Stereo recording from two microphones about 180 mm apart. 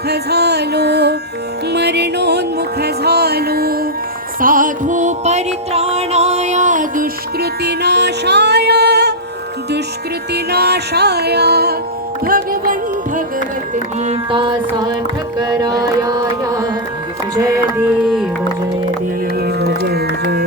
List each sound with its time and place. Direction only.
0.1 s music: 65° right (ahead or behind)
10.3 s music: 65° right (ahead or behind)
12.2 s music: 50° right (ahead or behind)
14.0 s music: 35° right (ahead or behind)
15.8 s carnatic music: 20° right (ahead or behind)
17.3 s music: 15° right (ahead or behind); by 18.3 s centre (ahead or behind)
19.4 s music: 60° right (ahead or behind)